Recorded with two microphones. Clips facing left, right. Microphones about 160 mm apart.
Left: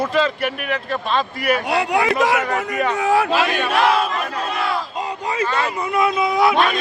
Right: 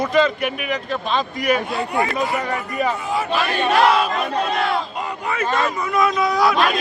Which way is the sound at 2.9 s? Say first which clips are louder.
Left 5 dB; 75° left (ahead or behind).